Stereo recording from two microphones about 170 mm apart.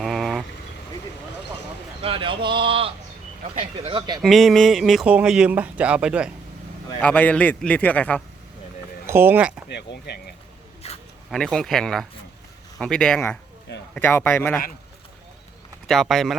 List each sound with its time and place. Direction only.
0.0 s vehicle: centre (ahead or behind)
2.0 s a man's voice: 30° right (ahead or behind)
4.2 s speech: centre (ahead or behind)
7.0 s a man's voice: 10° left (ahead or behind)
9.0 s speech: 15° right (ahead or behind)
9.6 s speech: 85° left
10.8 s zipper: 35° left (ahead or behind)
11.3 s a man's voice: 5° left (ahead or behind)
15.9 s speech: centre (ahead or behind)